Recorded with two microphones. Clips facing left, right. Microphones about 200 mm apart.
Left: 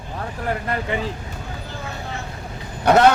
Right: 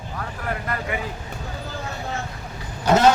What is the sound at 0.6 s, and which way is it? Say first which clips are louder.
Speech: left 3 dB; 30° left (ahead or behind).